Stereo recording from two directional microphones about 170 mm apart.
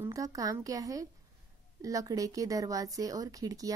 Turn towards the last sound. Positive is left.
turn(degrees=-20)  # may be behind; listen again after turning